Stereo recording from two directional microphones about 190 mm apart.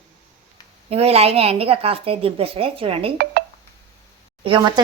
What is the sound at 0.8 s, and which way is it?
A woman's voice, 30° right (ahead or behind).